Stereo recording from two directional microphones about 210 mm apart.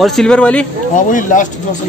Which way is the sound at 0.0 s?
Centre (ahead or behind).